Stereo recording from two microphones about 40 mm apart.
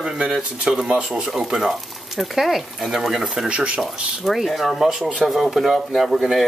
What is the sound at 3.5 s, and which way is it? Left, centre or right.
Speech, right.